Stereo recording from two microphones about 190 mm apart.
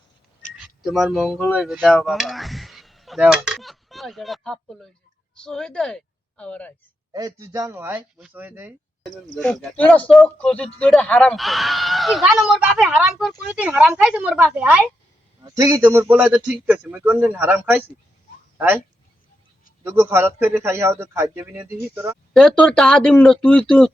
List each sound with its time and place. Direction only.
0.5 s speech: centre (ahead or behind)
7.1 s a man's voice: 20° right (ahead or behind)
9.0 s a man's voice: 5° left (ahead or behind)
19.8 s a man's voice: 10° right (ahead or behind)
22.3 s speech: 5° left (ahead or behind)